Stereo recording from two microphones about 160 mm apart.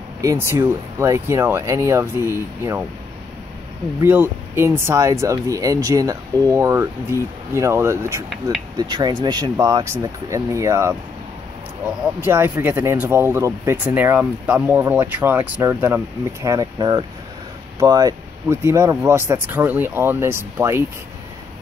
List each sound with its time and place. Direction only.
0.2 s speech: 20° right (ahead or behind)
4.0 s speech: 15° right (ahead or behind)
12.0 s speech: 15° right (ahead or behind)